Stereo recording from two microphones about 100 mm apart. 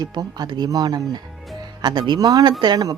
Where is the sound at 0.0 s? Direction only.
45° right (ahead or behind).